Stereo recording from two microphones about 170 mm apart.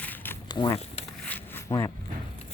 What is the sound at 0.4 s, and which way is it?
Speech, 25° left (ahead or behind).